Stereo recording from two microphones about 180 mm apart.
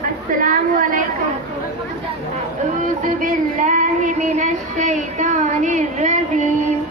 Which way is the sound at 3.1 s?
45° right (ahead or behind).